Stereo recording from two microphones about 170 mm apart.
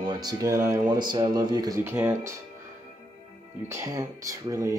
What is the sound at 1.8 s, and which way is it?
Speech, 15° right (ahead or behind).